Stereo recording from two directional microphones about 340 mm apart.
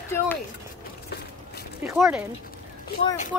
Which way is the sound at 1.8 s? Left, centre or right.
Centre.